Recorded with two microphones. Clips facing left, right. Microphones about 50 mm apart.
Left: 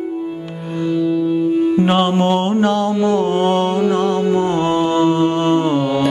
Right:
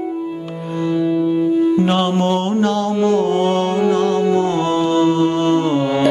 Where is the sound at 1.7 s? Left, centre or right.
Centre.